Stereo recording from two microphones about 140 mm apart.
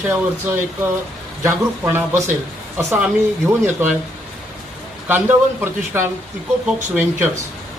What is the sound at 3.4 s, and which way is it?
Speech, 15° right (ahead or behind).